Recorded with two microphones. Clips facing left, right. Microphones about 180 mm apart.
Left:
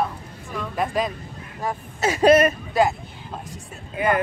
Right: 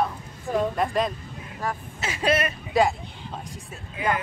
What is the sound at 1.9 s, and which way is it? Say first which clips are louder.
Speech: left 10 dB; 40° left (ahead or behind).